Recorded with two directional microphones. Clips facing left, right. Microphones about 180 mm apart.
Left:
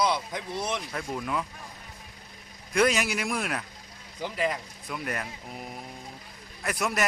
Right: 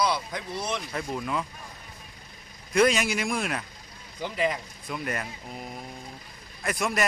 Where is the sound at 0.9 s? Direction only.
Centre (ahead or behind).